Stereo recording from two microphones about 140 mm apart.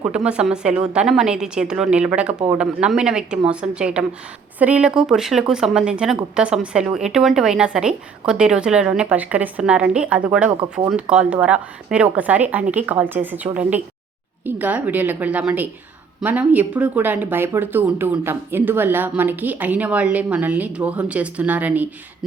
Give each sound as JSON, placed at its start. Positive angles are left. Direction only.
{"t": 0.0, "sound": "a woman's voice", "side_deg": -5}
{"t": 10.6, "sound": "speech", "side_deg": -40}
{"t": 11.1, "sound": "speech", "side_deg": -10}